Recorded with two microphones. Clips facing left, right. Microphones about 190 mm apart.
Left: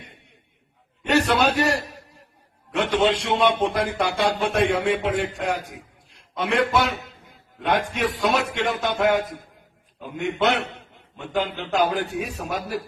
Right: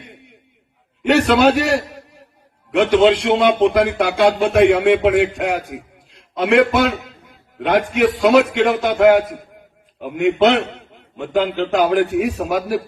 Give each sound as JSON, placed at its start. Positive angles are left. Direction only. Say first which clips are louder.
{"t": 1.0, "sound": "a man's voice", "louder": "right 7 dB", "side_deg": -85}
{"t": 2.7, "sound": "a man's voice", "louder": "right 8 dB", "side_deg": -90}
{"t": 11.3, "sound": "a man's voice", "louder": "right 6 dB", "side_deg": -85}